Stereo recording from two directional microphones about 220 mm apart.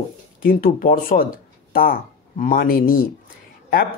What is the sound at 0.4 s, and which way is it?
Speech, 40° left (ahead or behind).